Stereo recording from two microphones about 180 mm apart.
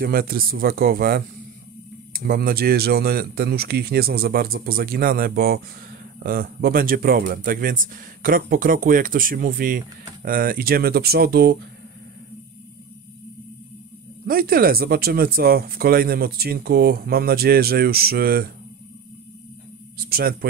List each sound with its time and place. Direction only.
0.0 s speech: 55° right (ahead or behind)
14.2 s speech: 55° right (ahead or behind)
20.1 s speech: 55° right (ahead or behind)